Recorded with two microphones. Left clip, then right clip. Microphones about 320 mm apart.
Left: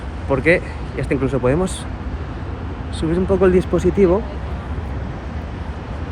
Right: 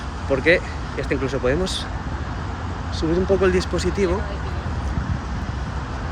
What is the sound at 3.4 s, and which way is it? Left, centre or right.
Speech, centre.